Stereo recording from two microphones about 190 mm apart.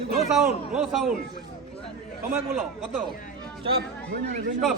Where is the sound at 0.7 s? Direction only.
5° right (ahead or behind).